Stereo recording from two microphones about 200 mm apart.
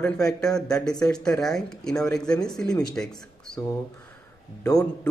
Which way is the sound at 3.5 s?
15° left (ahead or behind).